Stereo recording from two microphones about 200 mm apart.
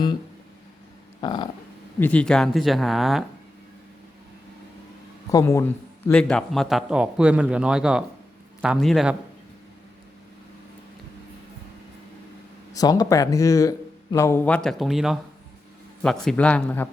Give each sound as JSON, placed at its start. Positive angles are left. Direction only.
{"t": 1.2, "sound": "a sound", "side_deg": 20}
{"t": 2.0, "sound": "a man's voice", "side_deg": 5}
{"t": 5.3, "sound": "a man's voice", "side_deg": 15}
{"t": 12.7, "sound": "speech", "side_deg": 20}